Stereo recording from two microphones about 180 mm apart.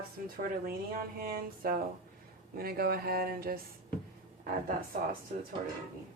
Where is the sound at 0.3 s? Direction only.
50° right (ahead or behind).